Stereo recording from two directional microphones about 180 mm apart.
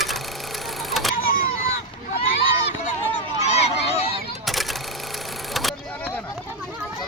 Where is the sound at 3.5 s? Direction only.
35° left (ahead or behind).